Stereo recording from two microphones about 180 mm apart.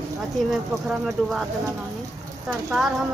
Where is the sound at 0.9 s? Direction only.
Centre (ahead or behind).